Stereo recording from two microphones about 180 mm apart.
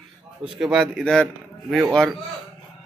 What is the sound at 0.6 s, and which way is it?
Speech, centre (ahead or behind).